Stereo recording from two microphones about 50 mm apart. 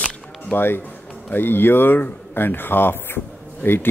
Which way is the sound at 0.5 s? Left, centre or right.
Left.